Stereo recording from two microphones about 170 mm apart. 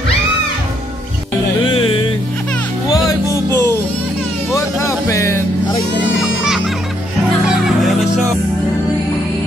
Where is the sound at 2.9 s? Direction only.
20° left (ahead or behind).